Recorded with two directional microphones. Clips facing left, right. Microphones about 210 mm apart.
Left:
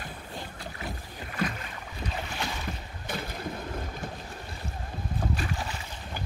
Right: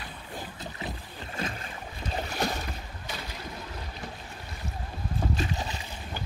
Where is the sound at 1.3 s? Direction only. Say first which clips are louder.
Left 3 dB; 25° right (ahead or behind).